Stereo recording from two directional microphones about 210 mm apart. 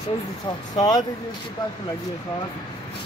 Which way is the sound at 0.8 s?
20° left (ahead or behind).